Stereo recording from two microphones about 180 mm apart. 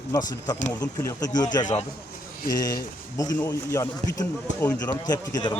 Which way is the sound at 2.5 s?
20° left (ahead or behind).